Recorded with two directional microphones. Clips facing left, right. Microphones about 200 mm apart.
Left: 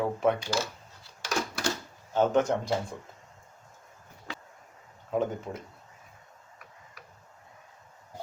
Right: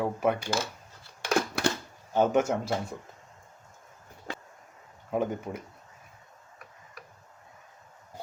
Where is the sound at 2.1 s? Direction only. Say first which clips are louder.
Even; 10° right (ahead or behind).